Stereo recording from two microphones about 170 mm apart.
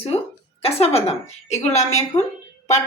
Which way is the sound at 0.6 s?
35° left (ahead or behind).